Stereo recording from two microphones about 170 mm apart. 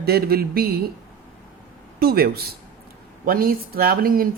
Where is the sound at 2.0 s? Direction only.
65° right (ahead or behind).